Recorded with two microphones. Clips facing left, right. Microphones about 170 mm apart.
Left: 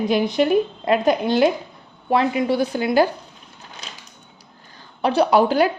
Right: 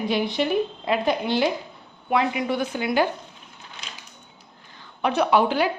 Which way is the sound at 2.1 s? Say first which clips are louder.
Left 4 dB; 35° left (ahead or behind).